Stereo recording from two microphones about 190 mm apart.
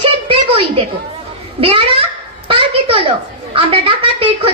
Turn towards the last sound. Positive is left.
turn(degrees=-25)  # may be behind; listen again after turning